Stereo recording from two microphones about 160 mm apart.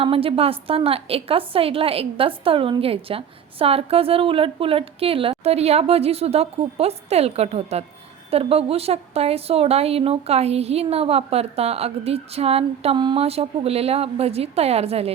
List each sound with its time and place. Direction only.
0.0 s a woman's voice: 35° right (ahead or behind)